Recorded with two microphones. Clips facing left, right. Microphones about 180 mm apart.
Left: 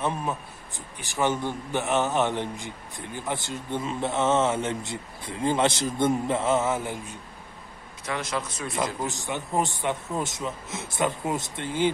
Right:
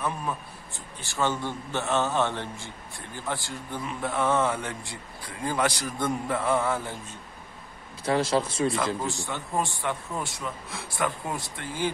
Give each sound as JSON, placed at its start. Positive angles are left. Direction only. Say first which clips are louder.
{"t": 0.0, "sound": "a man's voice", "louder": "left 2 dB", "side_deg": 20}
{"t": 8.0, "sound": "speech", "louder": "right 6 dB", "side_deg": -30}
{"t": 9.0, "sound": "speech", "louder": "left 1 dB", "side_deg": 20}